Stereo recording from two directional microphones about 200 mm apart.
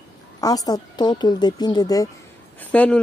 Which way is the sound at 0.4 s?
20° left (ahead or behind).